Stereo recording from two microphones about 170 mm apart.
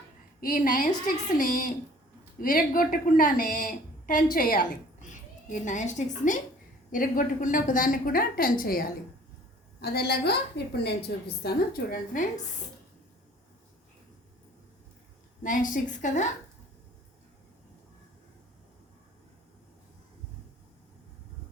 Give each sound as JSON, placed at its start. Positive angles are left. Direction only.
{"t": 0.3, "sound": "a woman's voice", "side_deg": 55}
{"t": 11.4, "sound": "a woman's voice", "side_deg": 60}
{"t": 15.4, "sound": "a woman's voice", "side_deg": 50}